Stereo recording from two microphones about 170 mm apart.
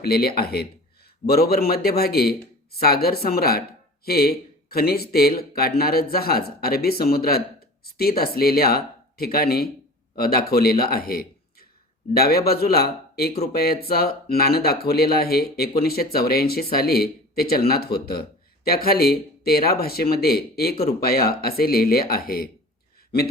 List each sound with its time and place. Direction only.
0.0 s a man's voice: 65° left (ahead or behind)